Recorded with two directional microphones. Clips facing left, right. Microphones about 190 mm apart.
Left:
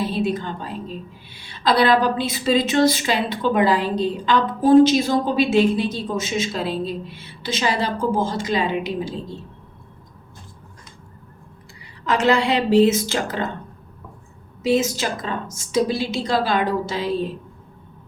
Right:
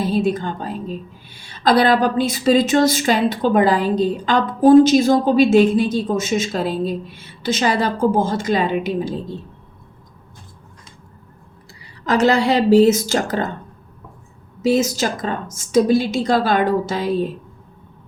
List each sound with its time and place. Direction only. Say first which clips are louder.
0.0 s a woman's voice: right 4 dB; 45° right (ahead or behind)
12.0 s a woman's voice: right 3 dB; 40° right (ahead or behind)
14.6 s a woman's voice: right 3 dB; 40° right (ahead or behind)